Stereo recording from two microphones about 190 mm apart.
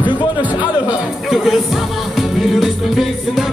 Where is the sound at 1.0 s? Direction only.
Centre (ahead or behind).